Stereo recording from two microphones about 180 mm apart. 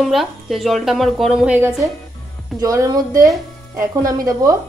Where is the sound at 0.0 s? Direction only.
Centre (ahead or behind).